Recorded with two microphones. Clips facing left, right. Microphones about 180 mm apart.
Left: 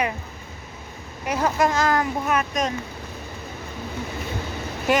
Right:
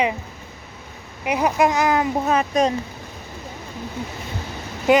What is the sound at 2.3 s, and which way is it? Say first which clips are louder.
Speech: right 6 dB; 30° right (ahead or behind).